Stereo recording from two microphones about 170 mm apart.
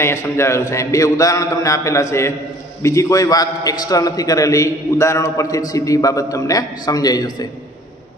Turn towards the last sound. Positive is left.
turn(degrees=20)  # may be behind; listen again after turning